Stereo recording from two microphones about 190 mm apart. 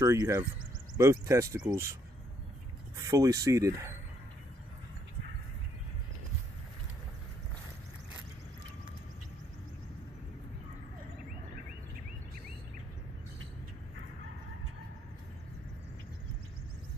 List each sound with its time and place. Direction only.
0.0 s speech: 15° right (ahead or behind)
3.0 s speech: 15° right (ahead or behind)